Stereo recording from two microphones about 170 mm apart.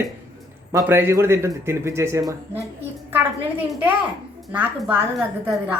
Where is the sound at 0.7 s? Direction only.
15° right (ahead or behind).